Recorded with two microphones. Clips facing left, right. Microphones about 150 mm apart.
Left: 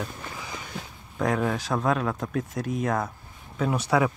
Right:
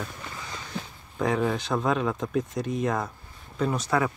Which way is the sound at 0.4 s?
10° left (ahead or behind).